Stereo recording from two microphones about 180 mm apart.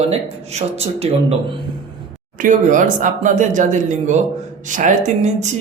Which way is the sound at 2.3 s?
45° right (ahead or behind).